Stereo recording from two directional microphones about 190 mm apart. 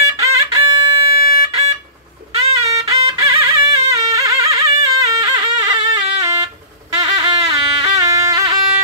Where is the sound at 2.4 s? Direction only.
35° right (ahead or behind).